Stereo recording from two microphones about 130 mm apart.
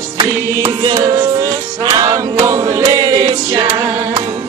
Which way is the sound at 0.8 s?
35° right (ahead or behind).